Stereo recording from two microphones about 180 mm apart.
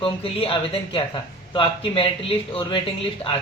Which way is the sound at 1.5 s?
30° left (ahead or behind).